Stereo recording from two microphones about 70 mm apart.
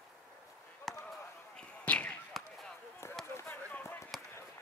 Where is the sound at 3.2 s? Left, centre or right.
Centre.